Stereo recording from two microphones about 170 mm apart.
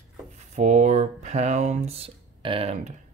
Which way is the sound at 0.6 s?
45° right (ahead or behind).